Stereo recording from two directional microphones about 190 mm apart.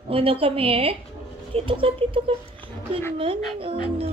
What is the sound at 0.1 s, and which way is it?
A woman's voice, 30° right (ahead or behind).